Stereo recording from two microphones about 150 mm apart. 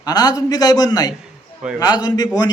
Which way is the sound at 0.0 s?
25° left (ahead or behind).